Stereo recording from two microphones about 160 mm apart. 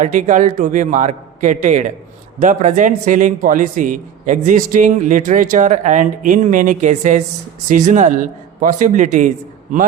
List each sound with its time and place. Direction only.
0.0 s a man's voice: 50° right (ahead or behind)